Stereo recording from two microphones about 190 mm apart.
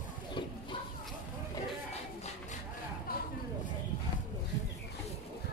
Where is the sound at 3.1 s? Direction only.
50° left (ahead or behind).